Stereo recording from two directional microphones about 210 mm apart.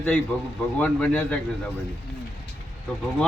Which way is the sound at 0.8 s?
5° left (ahead or behind).